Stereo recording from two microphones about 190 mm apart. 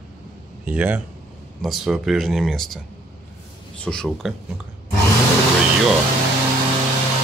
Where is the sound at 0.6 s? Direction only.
10° right (ahead or behind).